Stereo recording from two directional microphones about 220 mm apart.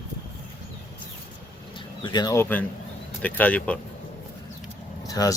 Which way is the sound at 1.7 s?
20° left (ahead or behind).